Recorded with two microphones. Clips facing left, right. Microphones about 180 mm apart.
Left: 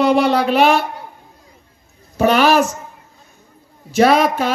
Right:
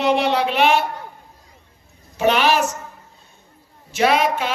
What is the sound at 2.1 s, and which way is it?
Speech, 40° left (ahead or behind).